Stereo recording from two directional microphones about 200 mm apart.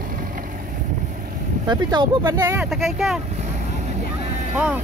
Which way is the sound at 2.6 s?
Centre (ahead or behind).